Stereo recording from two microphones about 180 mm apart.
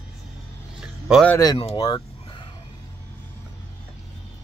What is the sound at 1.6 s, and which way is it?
Speech, 30° left (ahead or behind).